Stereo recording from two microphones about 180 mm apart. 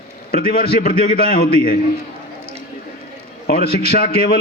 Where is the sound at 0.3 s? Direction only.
55° left (ahead or behind).